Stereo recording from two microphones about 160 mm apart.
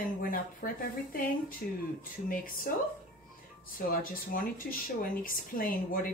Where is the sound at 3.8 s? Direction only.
60° left (ahead or behind).